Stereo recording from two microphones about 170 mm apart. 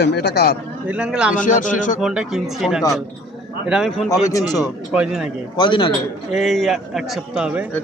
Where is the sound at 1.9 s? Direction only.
5° right (ahead or behind).